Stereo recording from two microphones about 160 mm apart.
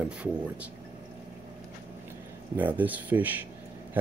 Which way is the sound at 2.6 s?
10° right (ahead or behind).